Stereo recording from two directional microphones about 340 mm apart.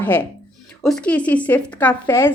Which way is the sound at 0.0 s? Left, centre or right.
Centre.